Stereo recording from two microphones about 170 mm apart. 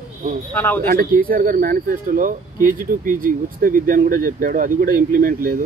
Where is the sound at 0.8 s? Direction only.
55° right (ahead or behind).